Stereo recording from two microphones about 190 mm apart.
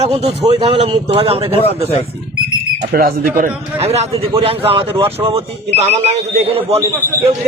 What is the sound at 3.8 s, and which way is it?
Speech, 35° right (ahead or behind).